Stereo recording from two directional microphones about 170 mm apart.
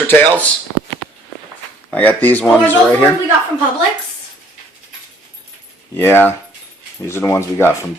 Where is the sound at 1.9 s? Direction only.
10° left (ahead or behind).